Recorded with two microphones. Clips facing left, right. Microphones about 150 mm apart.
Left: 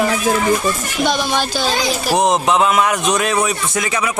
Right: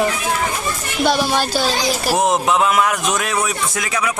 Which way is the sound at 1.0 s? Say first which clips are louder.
Right 1 dB; 10° right (ahead or behind).